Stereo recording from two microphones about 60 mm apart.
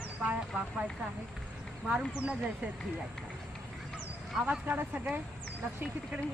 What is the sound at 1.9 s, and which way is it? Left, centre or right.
Speech, centre.